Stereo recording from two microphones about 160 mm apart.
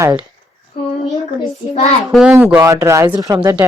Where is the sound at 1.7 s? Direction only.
45° left (ahead or behind).